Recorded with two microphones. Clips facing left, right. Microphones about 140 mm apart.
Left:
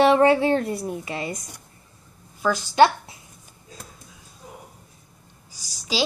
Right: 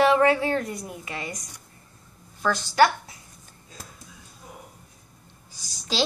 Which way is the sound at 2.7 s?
25° left (ahead or behind).